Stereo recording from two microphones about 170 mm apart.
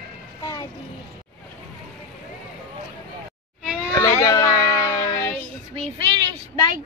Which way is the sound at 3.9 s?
15° left (ahead or behind).